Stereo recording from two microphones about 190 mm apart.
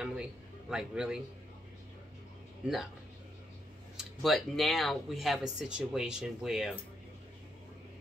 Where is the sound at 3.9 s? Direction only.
Centre (ahead or behind).